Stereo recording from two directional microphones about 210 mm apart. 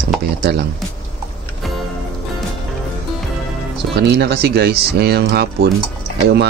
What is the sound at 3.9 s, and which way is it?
Speech, 50° right (ahead or behind).